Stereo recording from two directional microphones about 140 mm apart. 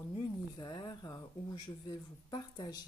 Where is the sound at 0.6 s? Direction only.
30° left (ahead or behind).